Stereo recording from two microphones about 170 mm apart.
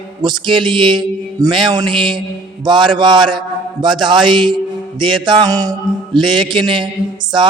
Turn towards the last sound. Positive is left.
turn(degrees=-25)  # may be behind; listen again after turning